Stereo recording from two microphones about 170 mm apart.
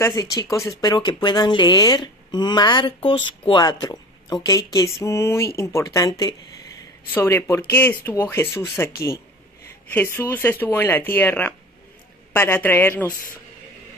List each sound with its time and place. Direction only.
0.0 s speech: 20° left (ahead or behind)